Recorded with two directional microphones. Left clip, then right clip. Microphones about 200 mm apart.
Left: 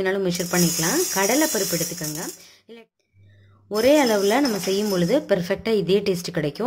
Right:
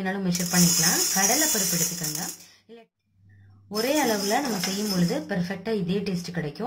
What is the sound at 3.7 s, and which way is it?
Speech, 55° left (ahead or behind).